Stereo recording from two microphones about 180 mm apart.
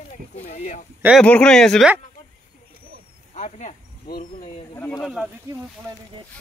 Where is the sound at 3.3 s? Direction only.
40° left (ahead or behind).